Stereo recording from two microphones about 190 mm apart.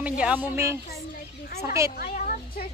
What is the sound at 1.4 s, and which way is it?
Speech, 50° left (ahead or behind).